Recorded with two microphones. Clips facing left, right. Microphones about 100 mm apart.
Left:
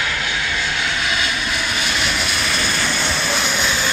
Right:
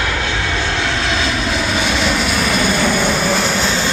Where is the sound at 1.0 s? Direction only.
90° right.